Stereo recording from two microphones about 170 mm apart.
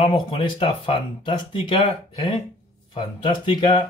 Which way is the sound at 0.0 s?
30° left (ahead or behind).